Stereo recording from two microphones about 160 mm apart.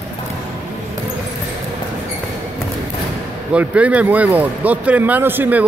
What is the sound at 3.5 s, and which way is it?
Speech, 10° right (ahead or behind).